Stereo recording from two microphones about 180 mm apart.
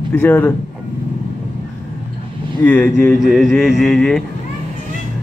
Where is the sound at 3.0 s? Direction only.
Centre (ahead or behind).